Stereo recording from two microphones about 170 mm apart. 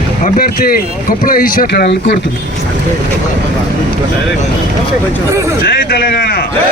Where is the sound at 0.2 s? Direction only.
60° left (ahead or behind); by 2.1 s 80° left.